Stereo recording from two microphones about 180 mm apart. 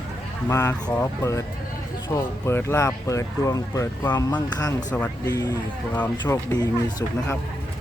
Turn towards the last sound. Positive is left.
turn(degrees=15)  # may be behind; listen again after turning